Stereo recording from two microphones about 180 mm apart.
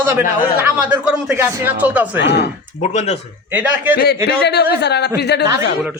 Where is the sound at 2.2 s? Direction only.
70° left (ahead or behind).